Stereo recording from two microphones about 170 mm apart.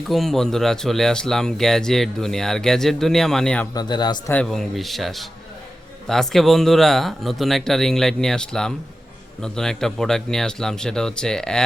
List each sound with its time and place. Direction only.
0.1 s speech: centre (ahead or behind)
3.8 s speech: 25° left (ahead or behind)
4.3 s speech: 5° left (ahead or behind)